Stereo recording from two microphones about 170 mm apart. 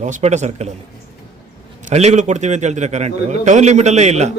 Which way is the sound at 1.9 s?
40° right (ahead or behind).